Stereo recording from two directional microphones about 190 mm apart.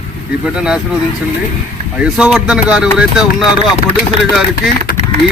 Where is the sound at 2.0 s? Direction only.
5° right (ahead or behind).